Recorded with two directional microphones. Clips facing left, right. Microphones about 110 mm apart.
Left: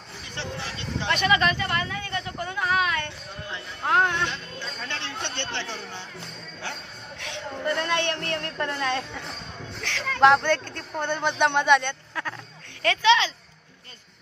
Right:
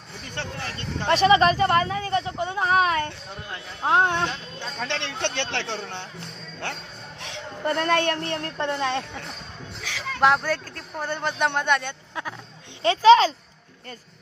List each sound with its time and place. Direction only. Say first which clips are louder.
0.4 s speech: right 1 dB; 50° right (ahead or behind)
1.1 s speech: right 6 dB; 30° right (ahead or behind)
3.8 s music: right 2 dB; 25° right (ahead or behind)
4.6 s speech: right 4 dB; 75° right (ahead or behind)
7.2 s a sound: left 2 dB; 40° right (ahead or behind)
8.2 s music: right 1 dB; 30° right (ahead or behind)
9.8 s speech: left 3 dB; 5° right (ahead or behind)
12.8 s speech: right 6 dB; 35° right (ahead or behind)